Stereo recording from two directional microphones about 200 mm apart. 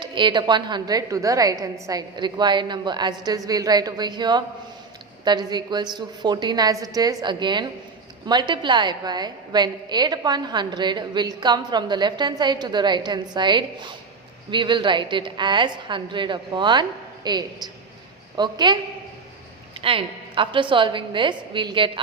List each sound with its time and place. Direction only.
0.0 s a woman's voice: 25° right (ahead or behind)
19.8 s a woman's voice: 25° right (ahead or behind)